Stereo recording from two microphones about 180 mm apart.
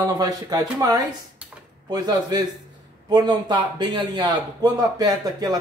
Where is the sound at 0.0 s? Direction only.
20° right (ahead or behind).